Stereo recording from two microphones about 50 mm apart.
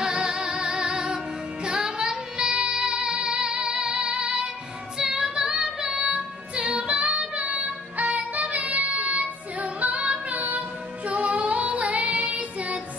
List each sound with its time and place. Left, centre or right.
0.0 s music: centre
11.1 s child singing: right